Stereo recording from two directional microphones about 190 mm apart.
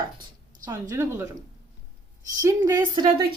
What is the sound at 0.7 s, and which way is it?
Speech, 15° right (ahead or behind).